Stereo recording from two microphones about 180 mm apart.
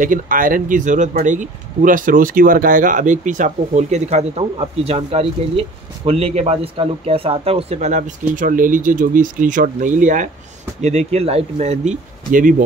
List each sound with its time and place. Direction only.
0.0 s speech: 50° right (ahead or behind)